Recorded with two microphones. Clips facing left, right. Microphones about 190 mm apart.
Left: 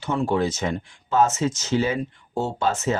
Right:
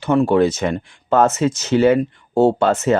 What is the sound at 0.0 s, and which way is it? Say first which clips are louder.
Speech: right 8 dB; 65° right (ahead or behind).